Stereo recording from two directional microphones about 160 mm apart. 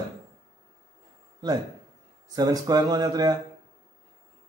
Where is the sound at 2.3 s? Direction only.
25° right (ahead or behind).